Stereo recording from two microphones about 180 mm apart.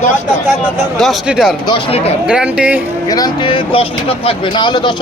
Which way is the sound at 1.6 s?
30° left (ahead or behind).